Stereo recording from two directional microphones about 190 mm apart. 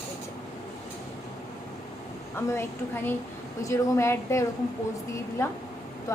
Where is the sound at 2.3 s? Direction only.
15° left (ahead or behind).